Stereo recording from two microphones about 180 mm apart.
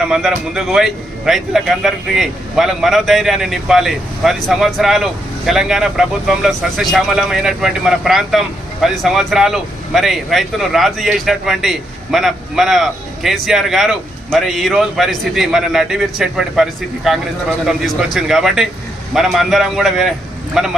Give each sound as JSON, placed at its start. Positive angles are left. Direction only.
{"t": 0.1, "sound": "a man's voice", "side_deg": -5}